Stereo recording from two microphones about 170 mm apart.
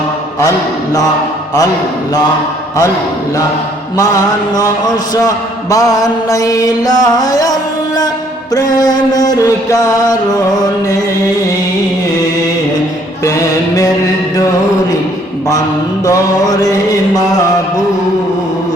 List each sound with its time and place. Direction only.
5.7 s music: 20° left (ahead or behind)
13.2 s music: 20° left (ahead or behind)
16.0 s music: 20° left (ahead or behind)